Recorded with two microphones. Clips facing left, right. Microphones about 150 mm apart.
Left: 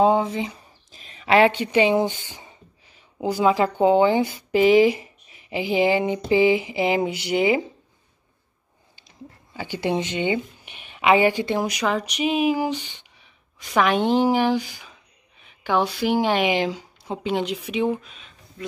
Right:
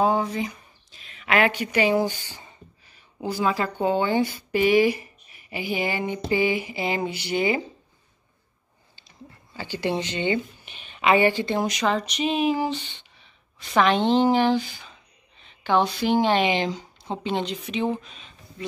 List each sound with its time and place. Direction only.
0.0 s speech: 20° left (ahead or behind)
0.9 s speech: 35° left (ahead or behind); by 7.6 s 20° left (ahead or behind)
9.6 s a woman's voice: 20° left (ahead or behind); by 18.7 s centre (ahead or behind)